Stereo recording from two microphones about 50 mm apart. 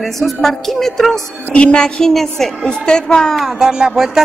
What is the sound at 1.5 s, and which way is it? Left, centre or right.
Music, left.